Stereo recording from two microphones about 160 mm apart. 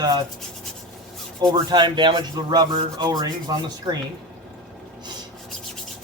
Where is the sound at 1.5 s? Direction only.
25° right (ahead or behind).